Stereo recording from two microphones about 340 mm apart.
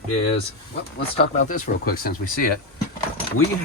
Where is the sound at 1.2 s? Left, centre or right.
Left.